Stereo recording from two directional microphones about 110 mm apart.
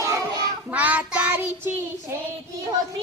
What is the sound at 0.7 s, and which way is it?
Child singing, 15° right (ahead or behind).